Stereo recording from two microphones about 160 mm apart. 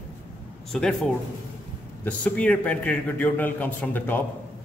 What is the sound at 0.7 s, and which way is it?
Speech, 5° left (ahead or behind).